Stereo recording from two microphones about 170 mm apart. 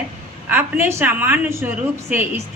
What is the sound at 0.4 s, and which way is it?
A woman's voice, 10° right (ahead or behind).